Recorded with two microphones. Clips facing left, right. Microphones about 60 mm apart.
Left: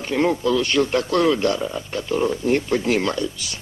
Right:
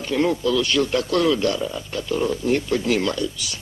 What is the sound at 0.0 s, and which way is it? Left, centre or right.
A man's voice, left.